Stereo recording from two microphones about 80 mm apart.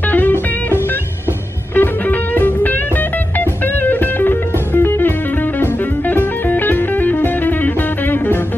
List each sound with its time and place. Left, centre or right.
0.1 s music: left
1.8 s music: left